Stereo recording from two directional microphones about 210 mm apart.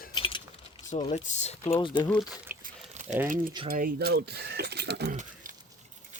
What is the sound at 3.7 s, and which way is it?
Speech, 45° right (ahead or behind).